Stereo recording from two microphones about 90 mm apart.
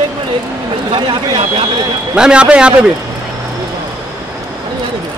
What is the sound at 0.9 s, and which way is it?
Speech, 70° right (ahead or behind).